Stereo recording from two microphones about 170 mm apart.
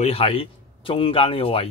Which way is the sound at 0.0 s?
35° left (ahead or behind).